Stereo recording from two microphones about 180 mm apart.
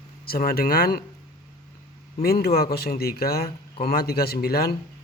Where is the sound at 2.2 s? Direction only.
60° left (ahead or behind).